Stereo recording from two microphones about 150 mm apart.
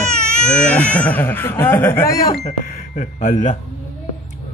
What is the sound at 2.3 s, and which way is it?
Speech, 45° left (ahead or behind).